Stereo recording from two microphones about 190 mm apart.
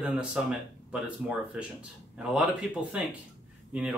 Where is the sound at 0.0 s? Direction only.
5° right (ahead or behind).